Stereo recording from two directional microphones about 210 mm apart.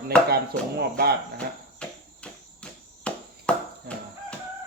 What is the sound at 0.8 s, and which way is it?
Speech, 50° right (ahead or behind).